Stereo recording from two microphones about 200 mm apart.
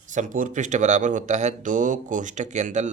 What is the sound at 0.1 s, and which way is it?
Speech, 40° right (ahead or behind).